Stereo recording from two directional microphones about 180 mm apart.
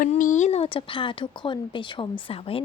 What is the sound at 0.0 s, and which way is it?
A woman's voice, 45° left (ahead or behind).